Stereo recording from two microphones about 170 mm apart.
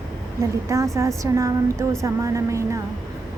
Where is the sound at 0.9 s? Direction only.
20° right (ahead or behind).